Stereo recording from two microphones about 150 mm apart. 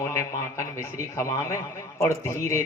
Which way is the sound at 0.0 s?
20° left (ahead or behind).